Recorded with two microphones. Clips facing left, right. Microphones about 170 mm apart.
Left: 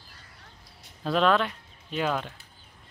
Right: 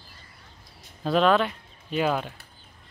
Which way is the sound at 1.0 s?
5° right (ahead or behind).